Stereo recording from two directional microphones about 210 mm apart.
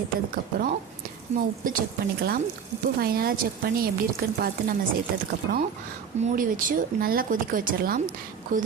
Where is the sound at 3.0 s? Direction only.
45° right (ahead or behind).